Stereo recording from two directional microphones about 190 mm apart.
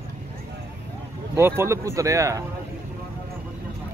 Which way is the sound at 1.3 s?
15° right (ahead or behind).